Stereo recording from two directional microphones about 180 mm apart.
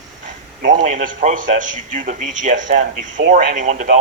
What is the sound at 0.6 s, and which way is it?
A man's voice, 45° right (ahead or behind).